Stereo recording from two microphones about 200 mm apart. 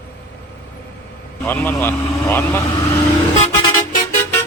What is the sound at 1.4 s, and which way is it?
Speech, 10° left (ahead or behind).